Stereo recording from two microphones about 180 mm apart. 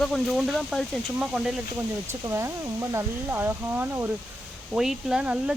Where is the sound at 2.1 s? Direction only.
15° right (ahead or behind).